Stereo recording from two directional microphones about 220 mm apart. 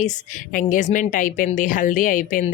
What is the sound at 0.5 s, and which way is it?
Speech, 35° left (ahead or behind).